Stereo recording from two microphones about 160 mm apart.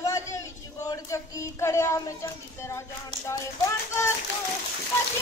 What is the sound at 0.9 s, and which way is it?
Speech, 20° left (ahead or behind).